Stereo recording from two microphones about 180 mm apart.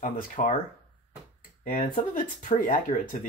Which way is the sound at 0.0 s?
45° left (ahead or behind).